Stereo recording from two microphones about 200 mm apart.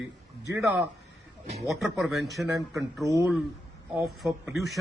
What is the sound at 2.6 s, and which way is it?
Speech, 15° right (ahead or behind).